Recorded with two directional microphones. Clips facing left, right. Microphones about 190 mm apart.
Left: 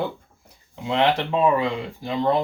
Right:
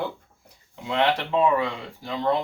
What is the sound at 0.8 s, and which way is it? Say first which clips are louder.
Speech: left 3 dB; 20° left (ahead or behind).